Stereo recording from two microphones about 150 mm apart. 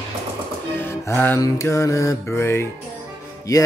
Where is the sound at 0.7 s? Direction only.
15° left (ahead or behind).